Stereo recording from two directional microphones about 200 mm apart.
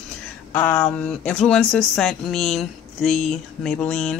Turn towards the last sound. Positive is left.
turn(degrees=0)  # may be behind; listen again after turning